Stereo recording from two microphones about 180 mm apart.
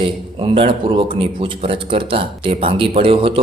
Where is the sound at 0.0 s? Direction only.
30° right (ahead or behind).